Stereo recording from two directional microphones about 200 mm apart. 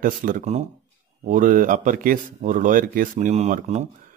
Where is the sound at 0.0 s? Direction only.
40° right (ahead or behind).